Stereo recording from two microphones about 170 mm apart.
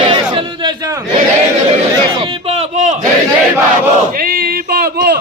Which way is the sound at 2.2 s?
35° right (ahead or behind).